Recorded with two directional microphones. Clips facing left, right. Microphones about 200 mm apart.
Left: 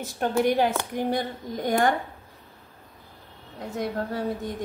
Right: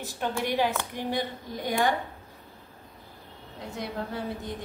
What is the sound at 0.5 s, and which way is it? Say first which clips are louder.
A woman's voice: left 4 dB; 45° left (ahead or behind).